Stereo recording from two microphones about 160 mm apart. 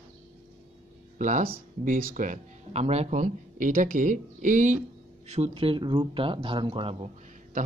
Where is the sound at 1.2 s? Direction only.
50° right (ahead or behind).